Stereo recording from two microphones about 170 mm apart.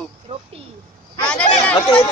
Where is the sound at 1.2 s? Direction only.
5° left (ahead or behind).